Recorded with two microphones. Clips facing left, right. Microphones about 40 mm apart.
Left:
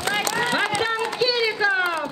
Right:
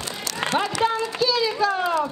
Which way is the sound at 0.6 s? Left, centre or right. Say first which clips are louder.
Even; left.